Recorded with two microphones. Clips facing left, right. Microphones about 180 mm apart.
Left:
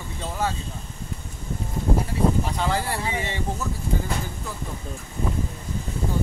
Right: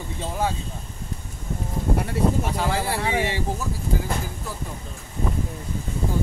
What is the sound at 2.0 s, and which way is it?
Speech, 65° right (ahead or behind).